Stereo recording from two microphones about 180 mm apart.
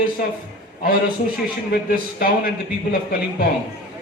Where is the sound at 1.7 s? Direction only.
60° left (ahead or behind).